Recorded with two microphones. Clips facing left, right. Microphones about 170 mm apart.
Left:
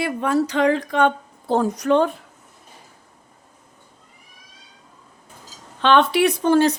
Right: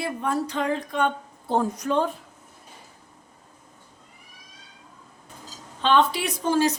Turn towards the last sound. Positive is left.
turn(degrees=60)  # may be behind; listen again after turning